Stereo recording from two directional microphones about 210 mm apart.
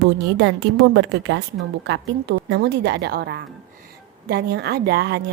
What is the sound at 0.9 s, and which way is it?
A woman's voice, 60° right (ahead or behind).